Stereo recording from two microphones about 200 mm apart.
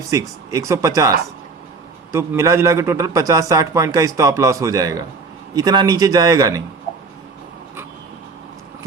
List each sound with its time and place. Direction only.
0.1 s a man's voice: 15° right (ahead or behind)
2.1 s a man's voice: 15° right (ahead or behind)